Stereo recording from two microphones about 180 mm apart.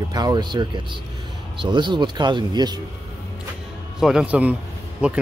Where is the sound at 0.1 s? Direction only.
20° right (ahead or behind).